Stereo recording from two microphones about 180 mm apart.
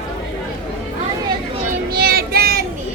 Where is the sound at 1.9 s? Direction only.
60° right (ahead or behind).